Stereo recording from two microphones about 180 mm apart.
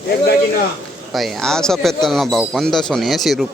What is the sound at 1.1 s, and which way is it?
A man's voice, centre (ahead or behind).